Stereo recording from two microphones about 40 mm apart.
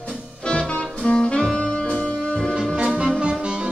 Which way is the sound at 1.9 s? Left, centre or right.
Centre.